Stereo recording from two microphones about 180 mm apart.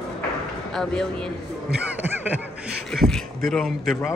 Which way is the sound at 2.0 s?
10° right (ahead or behind).